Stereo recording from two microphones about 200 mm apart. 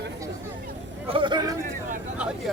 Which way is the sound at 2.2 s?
5° right (ahead or behind).